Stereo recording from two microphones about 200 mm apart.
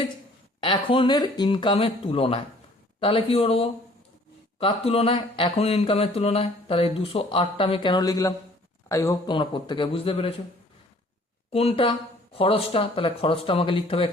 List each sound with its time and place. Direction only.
0.6 s speech: 25° left (ahead or behind)
11.5 s speech: 30° left (ahead or behind)